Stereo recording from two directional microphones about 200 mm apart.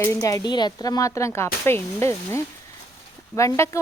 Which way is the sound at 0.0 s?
15° left (ahead or behind).